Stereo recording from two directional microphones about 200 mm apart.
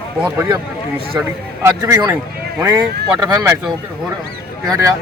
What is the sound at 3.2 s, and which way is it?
Speech, 15° right (ahead or behind).